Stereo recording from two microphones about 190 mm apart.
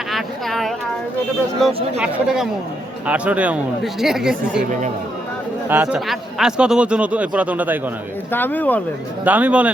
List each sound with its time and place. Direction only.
0.1 s speech: centre (ahead or behind)
4.6 s speech: 40° right (ahead or behind)
5.6 s speech: 10° right (ahead or behind)
8.3 s speech: 10° left (ahead or behind)
9.2 s speech: 10° right (ahead or behind)